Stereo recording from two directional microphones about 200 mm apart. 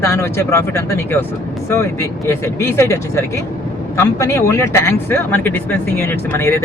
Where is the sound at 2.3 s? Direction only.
15° left (ahead or behind).